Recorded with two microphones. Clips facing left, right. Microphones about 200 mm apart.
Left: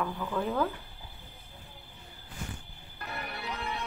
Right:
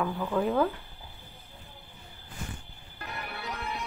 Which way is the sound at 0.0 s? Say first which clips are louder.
Right 4 dB; 10° right (ahead or behind).